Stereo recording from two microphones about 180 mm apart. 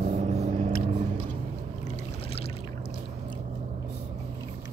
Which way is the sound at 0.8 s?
40° right (ahead or behind).